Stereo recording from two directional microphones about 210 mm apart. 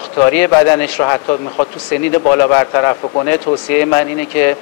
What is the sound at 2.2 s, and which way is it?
Speech, 15° left (ahead or behind).